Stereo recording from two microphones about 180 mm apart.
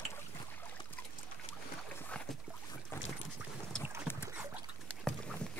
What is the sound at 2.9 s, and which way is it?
Boat, 15° left (ahead or behind).